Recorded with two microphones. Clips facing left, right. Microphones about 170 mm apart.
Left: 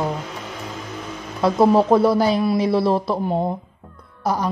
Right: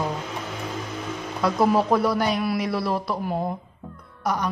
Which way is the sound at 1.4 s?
25° left (ahead or behind).